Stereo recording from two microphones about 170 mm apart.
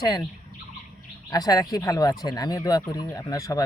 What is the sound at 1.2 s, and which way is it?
Speech, 25° left (ahead or behind).